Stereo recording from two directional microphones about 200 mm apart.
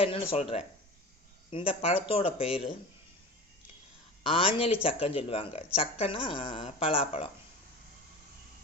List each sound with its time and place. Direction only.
0.0 s speech: 30° left (ahead or behind)
4.2 s speech: 25° left (ahead or behind)